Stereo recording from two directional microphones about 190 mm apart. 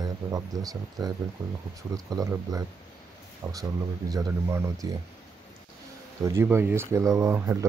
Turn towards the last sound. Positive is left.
turn(degrees=-15)  # may be behind; listen again after turning